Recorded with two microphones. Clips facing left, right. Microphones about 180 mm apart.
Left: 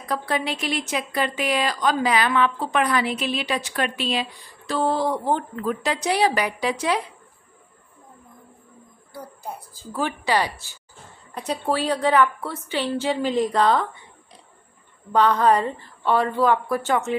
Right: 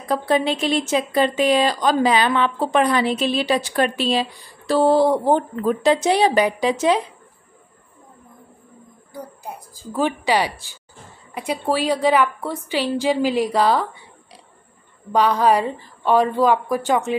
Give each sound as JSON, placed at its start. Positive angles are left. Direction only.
{"t": 0.1, "sound": "speech", "side_deg": -25}
{"t": 9.1, "sound": "a woman's voice", "side_deg": -15}
{"t": 15.1, "sound": "a woman's voice", "side_deg": -10}